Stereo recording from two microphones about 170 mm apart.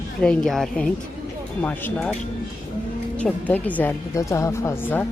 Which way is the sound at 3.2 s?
10° left (ahead or behind).